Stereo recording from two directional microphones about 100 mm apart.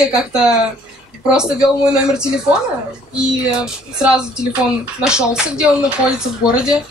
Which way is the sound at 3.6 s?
5° right (ahead or behind).